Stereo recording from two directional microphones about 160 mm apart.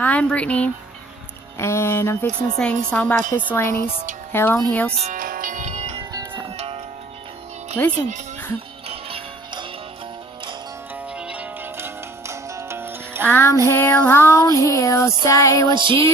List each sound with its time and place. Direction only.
0.0 s child singing: 10° left (ahead or behind)
5.1 s music: 60° right (ahead or behind); by 6.0 s 45° right (ahead or behind)
6.0 s music: 30° right (ahead or behind)
8.9 s music: 35° right (ahead or behind)
11.1 s music: 5° right (ahead or behind)
13.2 s child singing: 15° left (ahead or behind)
15.6 s music: 30° right (ahead or behind)